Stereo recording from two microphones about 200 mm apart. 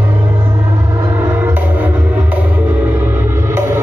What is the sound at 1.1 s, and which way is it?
Music, 10° right (ahead or behind).